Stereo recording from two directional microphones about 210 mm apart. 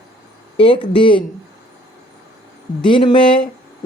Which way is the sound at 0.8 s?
25° left (ahead or behind).